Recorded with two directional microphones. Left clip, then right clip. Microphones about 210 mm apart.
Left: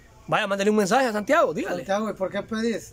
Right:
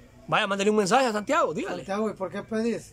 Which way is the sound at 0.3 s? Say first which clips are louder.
Left 1 dB; centre (ahead or behind).